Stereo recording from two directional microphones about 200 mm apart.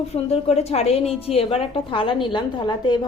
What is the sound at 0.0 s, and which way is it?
A woman's voice, 30° left (ahead or behind).